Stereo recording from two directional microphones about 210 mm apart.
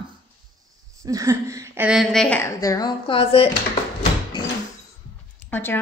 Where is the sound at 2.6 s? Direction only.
20° left (ahead or behind).